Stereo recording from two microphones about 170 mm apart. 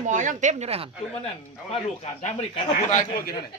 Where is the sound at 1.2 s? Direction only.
35° left (ahead or behind).